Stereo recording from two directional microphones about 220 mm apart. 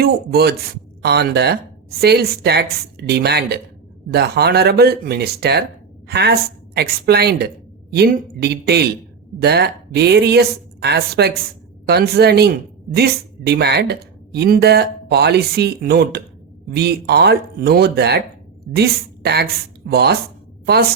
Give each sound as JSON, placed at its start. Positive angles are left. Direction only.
{"t": 0.0, "sound": "a woman's voice", "side_deg": -45}